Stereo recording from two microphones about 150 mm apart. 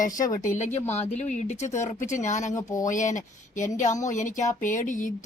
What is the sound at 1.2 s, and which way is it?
Speech, 50° left (ahead or behind).